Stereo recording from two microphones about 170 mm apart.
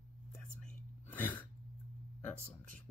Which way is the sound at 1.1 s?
10° left (ahead or behind).